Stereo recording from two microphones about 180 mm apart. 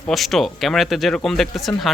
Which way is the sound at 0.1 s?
Centre (ahead or behind).